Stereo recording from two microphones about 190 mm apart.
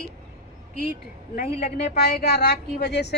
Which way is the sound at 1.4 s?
35° left (ahead or behind).